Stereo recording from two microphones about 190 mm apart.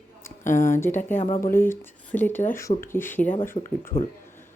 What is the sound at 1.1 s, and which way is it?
Speech, 30° left (ahead or behind).